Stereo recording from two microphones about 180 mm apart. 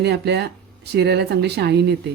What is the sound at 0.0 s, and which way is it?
Speech, 70° right (ahead or behind).